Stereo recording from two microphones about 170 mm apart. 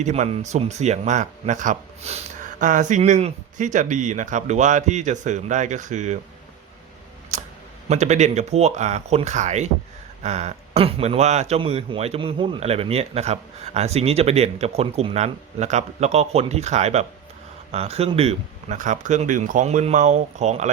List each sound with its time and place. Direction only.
0.0 s speech: 40° right (ahead or behind)
7.3 s camera: 45° right (ahead or behind)
7.9 s a man's voice: 45° right (ahead or behind)